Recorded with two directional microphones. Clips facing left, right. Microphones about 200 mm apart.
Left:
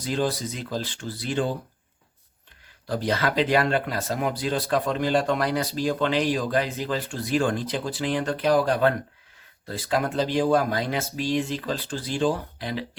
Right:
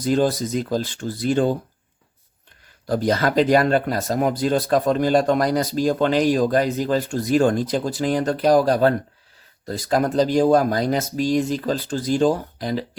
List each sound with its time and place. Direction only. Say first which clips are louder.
0.0 s speech: right 7 dB; 45° right (ahead or behind)
2.8 s speech: right 5 dB; 45° right (ahead or behind)